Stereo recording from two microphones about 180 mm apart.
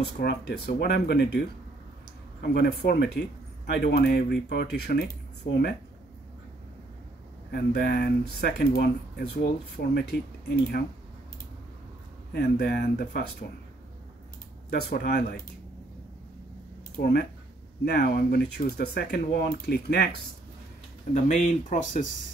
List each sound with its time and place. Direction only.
0.0 s speech: 65° left (ahead or behind)
7.5 s speech: 60° left (ahead or behind)
12.3 s speech: 65° left (ahead or behind)
14.7 s speech: 60° left (ahead or behind)
16.9 s speech: 60° left (ahead or behind)
21.1 s speech: 35° left (ahead or behind)